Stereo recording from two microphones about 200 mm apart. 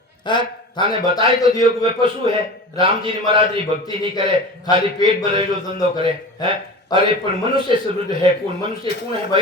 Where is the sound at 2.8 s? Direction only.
25° right (ahead or behind).